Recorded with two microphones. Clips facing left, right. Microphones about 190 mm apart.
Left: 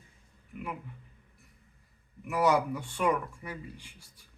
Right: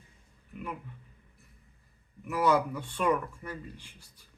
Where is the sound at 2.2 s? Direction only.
10° left (ahead or behind).